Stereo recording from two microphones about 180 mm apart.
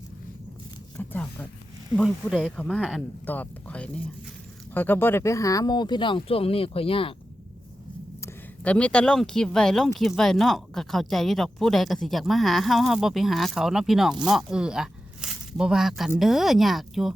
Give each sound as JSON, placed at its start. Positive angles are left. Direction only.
{"t": 0.9, "sound": "speech", "side_deg": 5}
{"t": 8.2, "sound": "speech", "side_deg": 5}